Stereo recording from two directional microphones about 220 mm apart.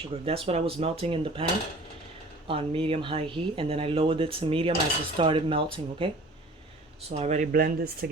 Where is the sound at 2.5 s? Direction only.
25° right (ahead or behind).